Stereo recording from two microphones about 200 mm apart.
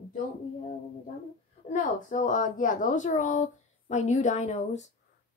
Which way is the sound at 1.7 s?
40° left (ahead or behind).